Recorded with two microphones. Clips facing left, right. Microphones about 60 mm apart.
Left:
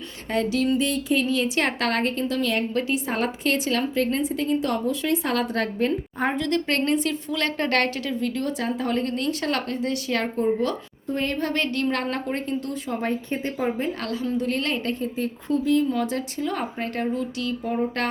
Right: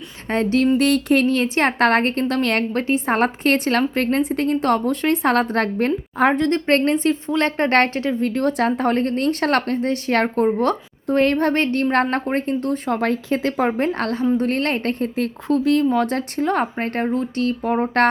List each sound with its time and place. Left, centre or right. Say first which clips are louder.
0.3 s a woman's voice: right 5 dB; right
0.8 s a woman's voice: right 7 dB; right
12.9 s a woman's voice: right 5 dB; right
15.4 s a woman's voice: right 4 dB; right